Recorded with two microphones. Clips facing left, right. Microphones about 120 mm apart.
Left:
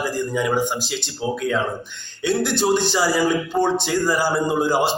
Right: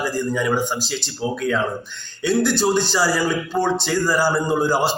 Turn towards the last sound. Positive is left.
turn(degrees=20)  # may be behind; listen again after turning